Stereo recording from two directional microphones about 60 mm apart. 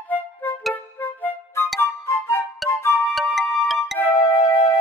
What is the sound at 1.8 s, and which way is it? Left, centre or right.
Music, left.